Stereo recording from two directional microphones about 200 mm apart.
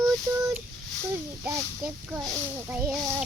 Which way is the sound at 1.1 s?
5° right (ahead or behind).